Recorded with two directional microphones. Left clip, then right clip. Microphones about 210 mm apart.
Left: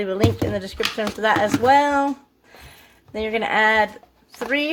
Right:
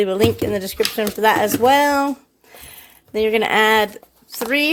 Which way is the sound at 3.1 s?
45° right (ahead or behind).